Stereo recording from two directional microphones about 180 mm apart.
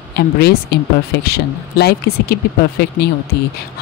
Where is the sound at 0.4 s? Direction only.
60° left (ahead or behind).